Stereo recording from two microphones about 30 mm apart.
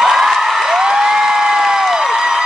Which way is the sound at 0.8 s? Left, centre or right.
Right.